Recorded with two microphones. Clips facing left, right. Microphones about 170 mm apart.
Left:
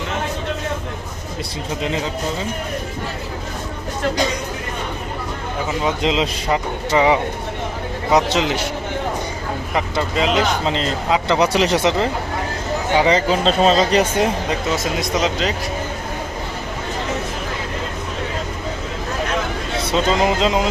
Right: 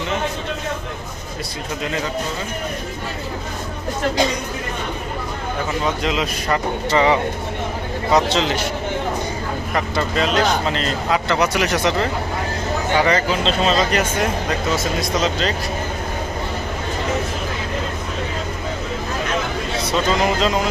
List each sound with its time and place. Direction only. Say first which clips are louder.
5.8 s speech: left 4 dB; 20° left (ahead or behind)
6.9 s a man's voice: left 1 dB; 10° left (ahead or behind)
9.7 s speech: even; 15° left (ahead or behind)
13.4 s speech: left 3 dB; 40° left (ahead or behind)
15.2 s a man's voice: left 1 dB; 15° left (ahead or behind)
19.9 s speech: left 2 dB; 20° left (ahead or behind)